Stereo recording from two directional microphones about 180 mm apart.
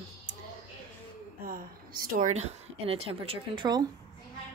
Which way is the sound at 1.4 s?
55° right (ahead or behind).